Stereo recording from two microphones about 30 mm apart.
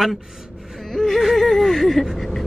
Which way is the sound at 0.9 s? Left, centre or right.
Centre.